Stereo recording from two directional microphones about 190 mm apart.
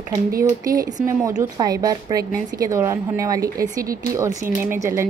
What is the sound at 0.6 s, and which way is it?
Speech, 20° right (ahead or behind).